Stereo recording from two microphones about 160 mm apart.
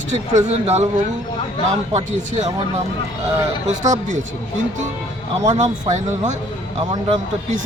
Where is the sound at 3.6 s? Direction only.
50° right (ahead or behind).